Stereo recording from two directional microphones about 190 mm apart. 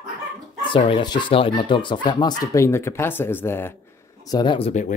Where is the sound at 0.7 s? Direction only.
25° left (ahead or behind).